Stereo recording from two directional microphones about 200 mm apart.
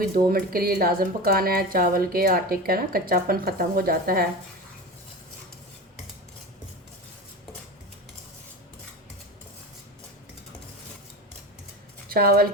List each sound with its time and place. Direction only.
0.3 s speech: 45° right (ahead or behind)
12.0 s a woman's voice: 50° right (ahead or behind)